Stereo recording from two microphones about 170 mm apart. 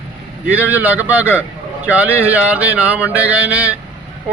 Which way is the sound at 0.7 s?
10° right (ahead or behind).